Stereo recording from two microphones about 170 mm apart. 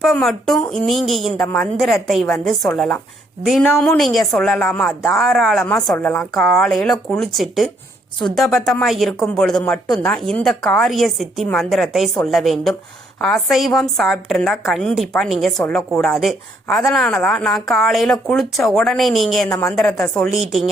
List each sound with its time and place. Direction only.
0.0 s a woman's voice: centre (ahead or behind)
19.5 s a woman's voice: 20° left (ahead or behind)
19.7 s a woman's voice: 5° left (ahead or behind)